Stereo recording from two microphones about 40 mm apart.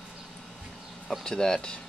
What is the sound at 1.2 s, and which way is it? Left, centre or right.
Speech, centre.